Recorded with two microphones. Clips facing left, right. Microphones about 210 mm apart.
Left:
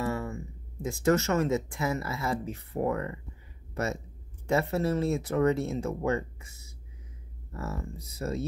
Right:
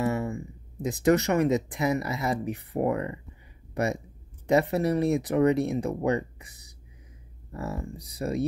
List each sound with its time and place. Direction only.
0.0 s speech: 20° right (ahead or behind)